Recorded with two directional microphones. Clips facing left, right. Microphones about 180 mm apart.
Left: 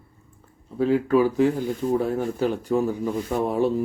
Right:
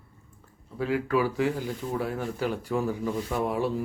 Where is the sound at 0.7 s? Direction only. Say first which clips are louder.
Left 6 dB; 25° left (ahead or behind).